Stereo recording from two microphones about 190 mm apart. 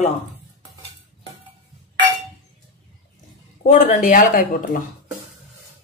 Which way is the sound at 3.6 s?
40° left (ahead or behind).